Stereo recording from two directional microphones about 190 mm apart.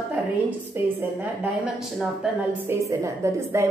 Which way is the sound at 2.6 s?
15° right (ahead or behind).